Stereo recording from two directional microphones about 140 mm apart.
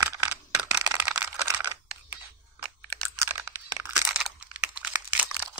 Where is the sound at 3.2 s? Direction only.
20° right (ahead or behind).